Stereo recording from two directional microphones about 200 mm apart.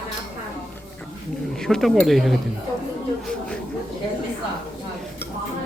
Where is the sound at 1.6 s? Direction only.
Centre (ahead or behind).